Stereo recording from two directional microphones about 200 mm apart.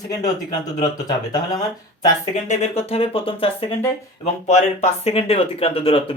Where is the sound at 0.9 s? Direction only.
20° left (ahead or behind).